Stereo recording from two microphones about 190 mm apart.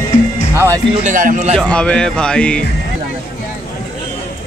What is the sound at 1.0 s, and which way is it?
Speech, 45° right (ahead or behind).